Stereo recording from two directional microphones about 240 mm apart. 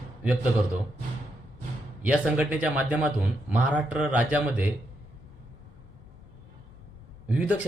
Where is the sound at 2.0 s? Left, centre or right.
Centre.